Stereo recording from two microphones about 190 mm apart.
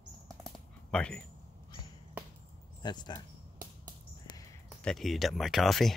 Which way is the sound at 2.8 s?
20° left (ahead or behind).